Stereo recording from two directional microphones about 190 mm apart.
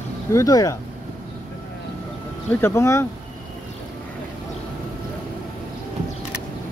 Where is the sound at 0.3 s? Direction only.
15° left (ahead or behind).